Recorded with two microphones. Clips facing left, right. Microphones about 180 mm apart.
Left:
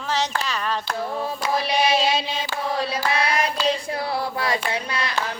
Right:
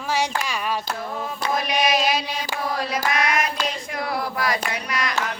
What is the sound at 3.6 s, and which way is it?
Female singing, 30° left (ahead or behind).